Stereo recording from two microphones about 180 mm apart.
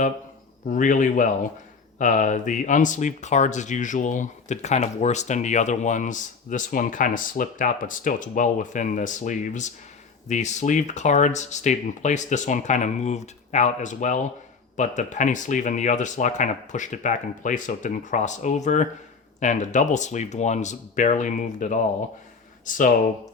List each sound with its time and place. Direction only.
0.7 s speech: 45° left (ahead or behind)